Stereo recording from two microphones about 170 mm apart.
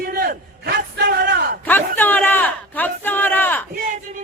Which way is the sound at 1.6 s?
10° left (ahead or behind).